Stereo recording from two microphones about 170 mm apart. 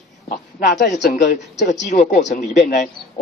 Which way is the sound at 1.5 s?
90° left.